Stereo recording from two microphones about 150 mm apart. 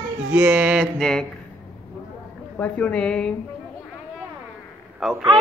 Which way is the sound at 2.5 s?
10° left (ahead or behind).